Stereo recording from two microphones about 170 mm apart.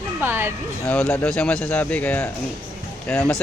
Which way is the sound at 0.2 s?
15° right (ahead or behind).